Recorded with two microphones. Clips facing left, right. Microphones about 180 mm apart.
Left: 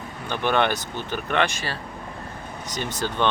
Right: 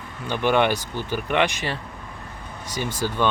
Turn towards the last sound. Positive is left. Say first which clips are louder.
# right 1 dB
turn(degrees=-10)  # may be behind; listen again after turning